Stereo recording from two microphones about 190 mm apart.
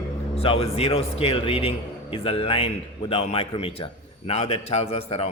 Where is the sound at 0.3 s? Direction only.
30° left (ahead or behind).